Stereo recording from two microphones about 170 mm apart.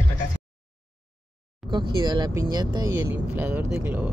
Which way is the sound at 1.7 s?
25° right (ahead or behind).